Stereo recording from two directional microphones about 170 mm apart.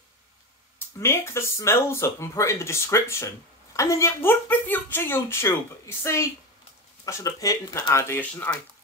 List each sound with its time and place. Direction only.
0.9 s a woman's voice: 15° left (ahead or behind)